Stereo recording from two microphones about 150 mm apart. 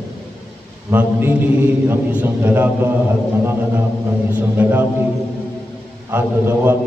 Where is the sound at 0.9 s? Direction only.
15° right (ahead or behind).